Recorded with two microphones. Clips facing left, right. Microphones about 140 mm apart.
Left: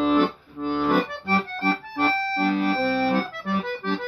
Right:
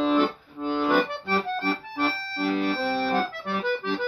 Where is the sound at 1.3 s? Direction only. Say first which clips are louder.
Left 2 dB; 45° left (ahead or behind).